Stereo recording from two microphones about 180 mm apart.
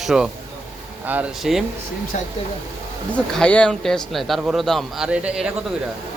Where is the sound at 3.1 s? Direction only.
5° left (ahead or behind).